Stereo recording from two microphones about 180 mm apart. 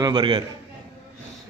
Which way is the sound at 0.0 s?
25° right (ahead or behind).